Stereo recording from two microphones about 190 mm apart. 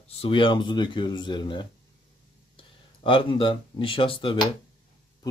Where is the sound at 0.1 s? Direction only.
30° left (ahead or behind).